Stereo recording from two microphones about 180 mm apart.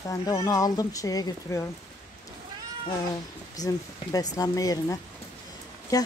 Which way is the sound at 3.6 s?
20° left (ahead or behind).